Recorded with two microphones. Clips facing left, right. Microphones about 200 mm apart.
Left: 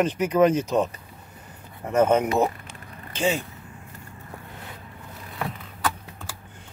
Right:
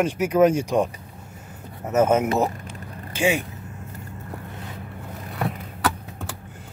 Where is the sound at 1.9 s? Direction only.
5° right (ahead or behind).